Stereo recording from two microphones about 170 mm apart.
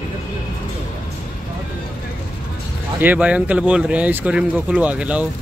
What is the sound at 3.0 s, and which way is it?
Speech, 10° right (ahead or behind).